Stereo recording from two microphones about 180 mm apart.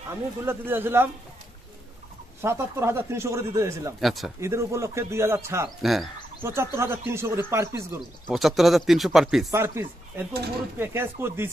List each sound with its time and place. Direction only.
0.1 s speech: 10° right (ahead or behind)
2.4 s speech: 15° right (ahead or behind)
4.0 s speech: centre (ahead or behind)
4.4 s speech: 15° right (ahead or behind)
5.8 s speech: centre (ahead or behind)
6.4 s speech: 15° right (ahead or behind)
8.3 s speech: centre (ahead or behind)
9.5 s speech: 15° right (ahead or behind)